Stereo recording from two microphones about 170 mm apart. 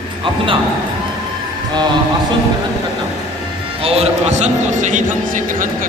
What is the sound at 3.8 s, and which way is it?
A man's voice, 35° right (ahead or behind).